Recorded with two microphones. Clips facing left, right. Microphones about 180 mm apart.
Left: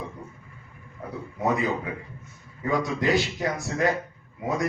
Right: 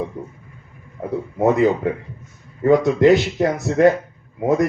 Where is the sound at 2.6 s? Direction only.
55° right (ahead or behind).